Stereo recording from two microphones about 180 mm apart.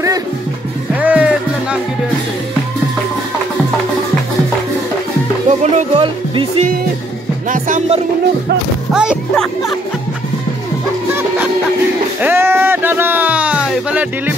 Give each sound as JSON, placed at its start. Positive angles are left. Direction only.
{"t": 1.0, "sound": "music", "side_deg": -5}
{"t": 5.6, "sound": "music", "side_deg": -30}
{"t": 7.4, "sound": "music", "side_deg": -45}
{"t": 8.9, "sound": "music", "side_deg": -5}
{"t": 12.2, "sound": "music", "side_deg": -10}